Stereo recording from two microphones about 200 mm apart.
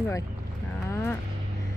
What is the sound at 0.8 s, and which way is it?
Vehicle, 10° left (ahead or behind).